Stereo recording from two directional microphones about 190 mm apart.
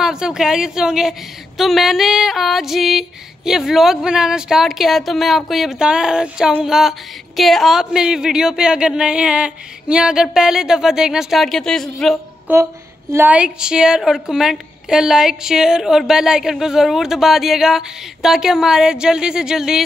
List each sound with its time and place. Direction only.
0.0 s female singing: 5° right (ahead or behind)
12.5 s a sound: 10° right (ahead or behind)
13.1 s female singing: 10° right (ahead or behind)